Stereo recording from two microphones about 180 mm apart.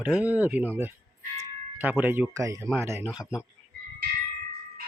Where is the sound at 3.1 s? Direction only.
20° left (ahead or behind).